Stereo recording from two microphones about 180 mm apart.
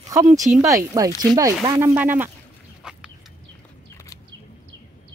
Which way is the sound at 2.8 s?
5° right (ahead or behind).